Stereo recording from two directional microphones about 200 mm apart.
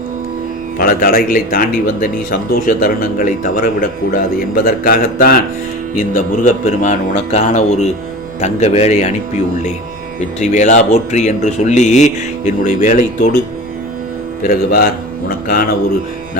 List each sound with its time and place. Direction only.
0.8 s speech: 45° left (ahead or behind)
10.4 s speech: 35° left (ahead or behind)
14.4 s speech: 50° left (ahead or behind)